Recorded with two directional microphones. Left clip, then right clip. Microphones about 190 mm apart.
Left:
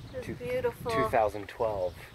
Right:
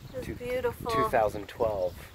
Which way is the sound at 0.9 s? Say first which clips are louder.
Right 1 dB; 5° right (ahead or behind).